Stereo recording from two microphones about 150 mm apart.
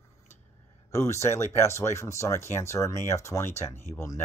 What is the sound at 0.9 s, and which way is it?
Speech, 20° left (ahead or behind).